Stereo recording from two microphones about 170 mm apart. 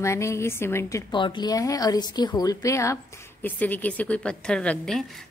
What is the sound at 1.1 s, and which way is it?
A woman's voice, 30° left (ahead or behind).